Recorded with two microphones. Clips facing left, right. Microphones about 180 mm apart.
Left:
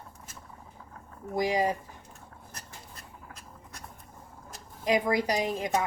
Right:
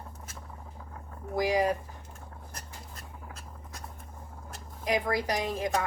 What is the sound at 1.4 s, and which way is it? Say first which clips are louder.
Speech: even; 20° left (ahead or behind).